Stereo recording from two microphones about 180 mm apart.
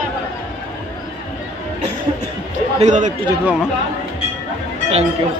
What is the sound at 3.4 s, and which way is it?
Speech, 5° right (ahead or behind).